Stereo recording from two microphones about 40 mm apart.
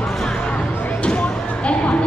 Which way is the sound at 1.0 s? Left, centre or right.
Left.